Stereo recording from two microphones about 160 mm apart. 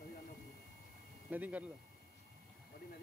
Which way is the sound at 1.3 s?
10° right (ahead or behind).